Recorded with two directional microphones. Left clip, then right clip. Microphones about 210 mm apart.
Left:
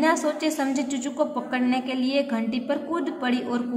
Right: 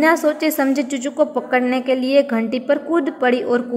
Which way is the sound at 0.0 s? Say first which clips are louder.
Right 7 dB; 30° right (ahead or behind).